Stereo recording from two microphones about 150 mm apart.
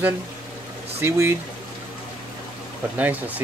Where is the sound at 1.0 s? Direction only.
15° right (ahead or behind).